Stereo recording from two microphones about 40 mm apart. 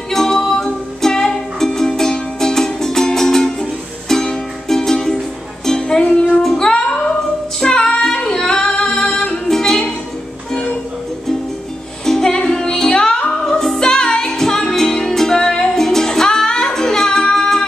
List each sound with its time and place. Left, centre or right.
0.1 s music: centre
5.7 s music: centre
6.4 s music: centre
7.6 s female singing: centre
9.5 s music: centre
12.1 s music: centre
13.5 s music: centre